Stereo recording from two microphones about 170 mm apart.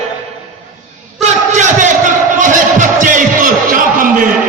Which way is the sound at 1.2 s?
45° right (ahead or behind).